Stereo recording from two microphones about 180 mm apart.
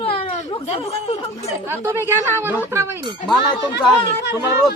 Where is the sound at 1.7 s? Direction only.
15° right (ahead or behind).